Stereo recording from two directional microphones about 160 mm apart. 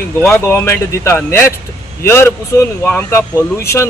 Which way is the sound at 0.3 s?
15° left (ahead or behind).